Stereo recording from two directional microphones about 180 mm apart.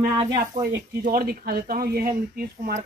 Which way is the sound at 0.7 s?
55° right (ahead or behind).